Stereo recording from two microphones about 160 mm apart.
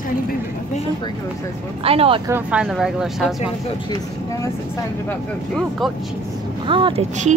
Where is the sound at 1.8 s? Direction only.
35° right (ahead or behind).